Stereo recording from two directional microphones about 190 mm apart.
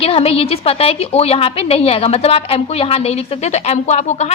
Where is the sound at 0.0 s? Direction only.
30° left (ahead or behind).